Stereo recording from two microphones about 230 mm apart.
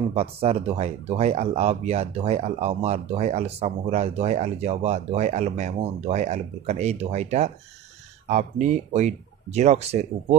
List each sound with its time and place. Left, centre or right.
0.1 s speech: right